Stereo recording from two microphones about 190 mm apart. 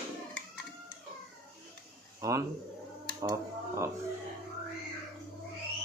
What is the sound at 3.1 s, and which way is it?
Speech, 15° right (ahead or behind).